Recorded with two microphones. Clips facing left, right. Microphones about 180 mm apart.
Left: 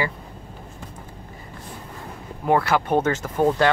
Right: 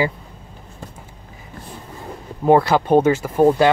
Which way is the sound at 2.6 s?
25° right (ahead or behind).